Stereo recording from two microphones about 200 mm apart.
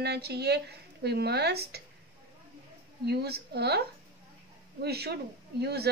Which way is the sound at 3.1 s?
55° right (ahead or behind).